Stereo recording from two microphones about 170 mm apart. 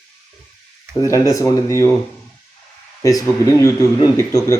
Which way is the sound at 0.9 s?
20° left (ahead or behind).